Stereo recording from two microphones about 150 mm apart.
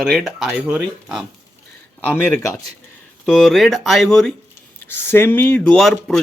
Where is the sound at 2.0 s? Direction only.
15° left (ahead or behind).